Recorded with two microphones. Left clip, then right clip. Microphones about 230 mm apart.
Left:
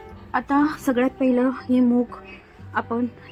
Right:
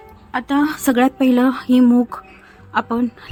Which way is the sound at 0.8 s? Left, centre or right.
Right.